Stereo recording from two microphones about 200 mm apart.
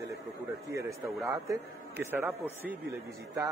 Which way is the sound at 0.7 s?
15° right (ahead or behind).